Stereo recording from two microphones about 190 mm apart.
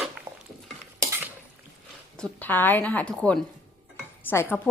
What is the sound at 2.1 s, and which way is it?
A woman's voice, 5° left (ahead or behind).